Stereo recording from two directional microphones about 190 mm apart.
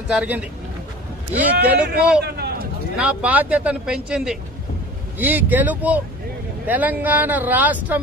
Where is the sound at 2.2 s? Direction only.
55° right (ahead or behind).